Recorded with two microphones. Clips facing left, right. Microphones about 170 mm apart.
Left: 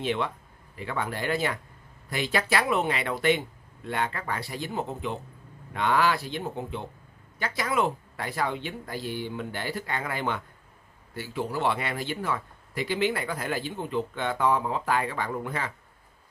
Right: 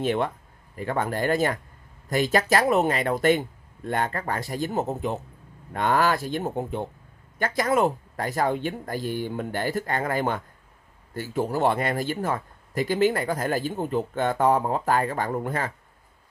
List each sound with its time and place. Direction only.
0.0 s speech: 45° right (ahead or behind)